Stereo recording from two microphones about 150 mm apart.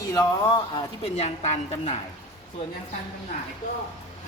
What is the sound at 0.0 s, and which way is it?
Speech, 25° left (ahead or behind).